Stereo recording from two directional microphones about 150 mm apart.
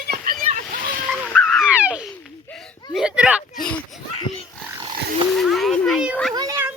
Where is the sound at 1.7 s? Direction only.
10° right (ahead or behind).